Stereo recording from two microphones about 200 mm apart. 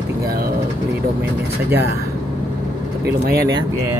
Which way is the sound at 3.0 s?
50° right (ahead or behind).